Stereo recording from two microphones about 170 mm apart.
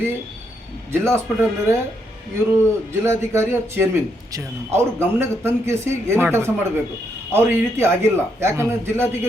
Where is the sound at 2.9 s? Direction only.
15° right (ahead or behind).